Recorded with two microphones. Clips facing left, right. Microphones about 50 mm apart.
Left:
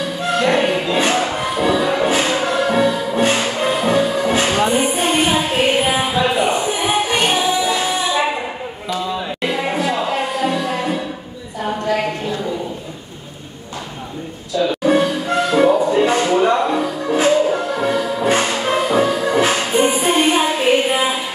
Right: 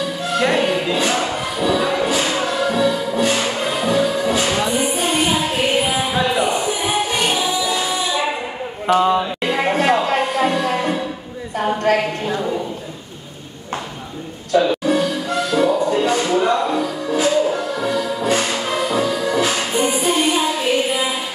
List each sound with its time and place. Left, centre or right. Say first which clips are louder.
0.5 s music: left 2 dB; left
8.8 s a sound: right 8 dB; right
9.5 s a sound: right 4 dB; right
10.0 s music: right 1 dB; right
14.5 s music: right 3 dB; right
14.9 s music: left 3 dB; left